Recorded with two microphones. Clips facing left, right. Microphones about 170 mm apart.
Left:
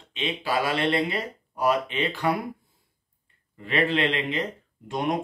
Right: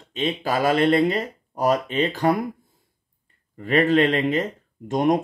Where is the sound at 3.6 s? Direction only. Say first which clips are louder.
Right 6 dB; 45° right (ahead or behind).